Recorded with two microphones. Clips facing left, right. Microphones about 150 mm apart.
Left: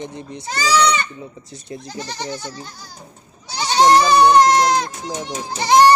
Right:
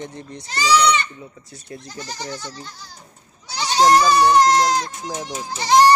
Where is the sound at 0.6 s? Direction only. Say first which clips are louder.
Even; 45° left (ahead or behind).